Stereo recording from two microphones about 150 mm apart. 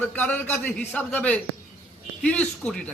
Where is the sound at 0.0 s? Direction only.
10° left (ahead or behind).